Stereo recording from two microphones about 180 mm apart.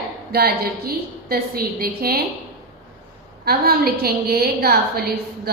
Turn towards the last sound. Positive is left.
turn(degrees=-60)  # may be behind; listen again after turning